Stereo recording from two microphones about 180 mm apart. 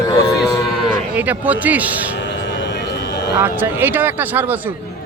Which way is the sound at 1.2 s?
10° right (ahead or behind).